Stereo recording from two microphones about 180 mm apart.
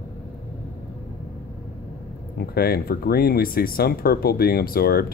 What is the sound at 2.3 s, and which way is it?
Speech, 55° left (ahead or behind).